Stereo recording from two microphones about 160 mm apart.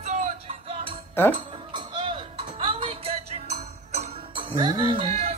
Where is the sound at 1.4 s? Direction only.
30° right (ahead or behind).